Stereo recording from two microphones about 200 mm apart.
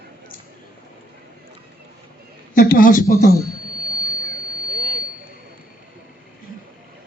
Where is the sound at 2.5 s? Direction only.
45° left (ahead or behind).